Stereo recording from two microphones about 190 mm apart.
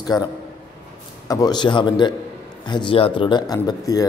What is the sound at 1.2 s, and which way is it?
A man's voice, 20° left (ahead or behind).